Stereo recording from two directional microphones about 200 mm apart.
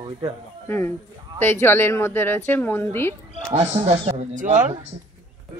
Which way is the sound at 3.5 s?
30° right (ahead or behind).